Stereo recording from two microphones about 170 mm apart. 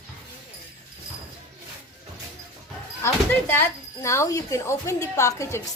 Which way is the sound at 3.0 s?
10° left (ahead or behind).